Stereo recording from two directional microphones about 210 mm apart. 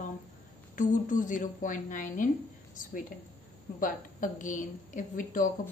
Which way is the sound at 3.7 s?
40° left (ahead or behind).